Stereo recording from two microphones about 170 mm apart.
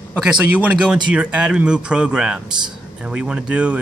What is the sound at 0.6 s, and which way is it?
Speech, 5° right (ahead or behind).